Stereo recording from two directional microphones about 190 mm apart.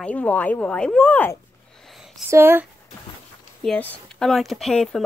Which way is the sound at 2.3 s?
10° right (ahead or behind).